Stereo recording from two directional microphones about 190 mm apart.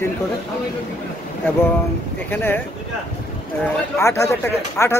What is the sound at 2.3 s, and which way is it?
Speech, 10° left (ahead or behind).